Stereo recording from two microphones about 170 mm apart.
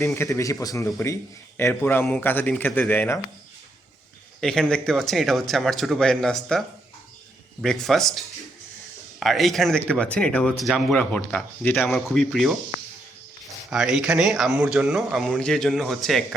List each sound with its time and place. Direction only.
0.0 s a man's voice: 20° left (ahead or behind)
4.4 s a man's voice: 5° left (ahead or behind)
9.2 s speech: centre (ahead or behind)
11.9 s a man's voice: centre (ahead or behind)
13.7 s a man's voice: 5° right (ahead or behind)